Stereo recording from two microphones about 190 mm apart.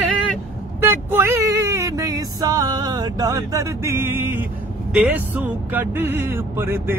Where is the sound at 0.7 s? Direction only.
10° right (ahead or behind).